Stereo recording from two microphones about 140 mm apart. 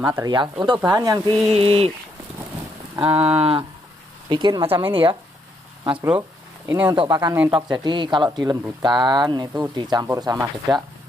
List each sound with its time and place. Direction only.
0.0 s speech: 25° right (ahead or behind)
1.5 s speech: 45° right (ahead or behind)
3.0 s speech: 40° right (ahead or behind)
5.9 s speech: 10° right (ahead or behind)